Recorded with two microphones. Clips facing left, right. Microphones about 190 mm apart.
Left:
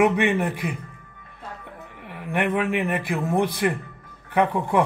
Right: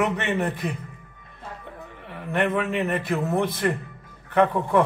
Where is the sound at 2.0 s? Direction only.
15° left (ahead or behind).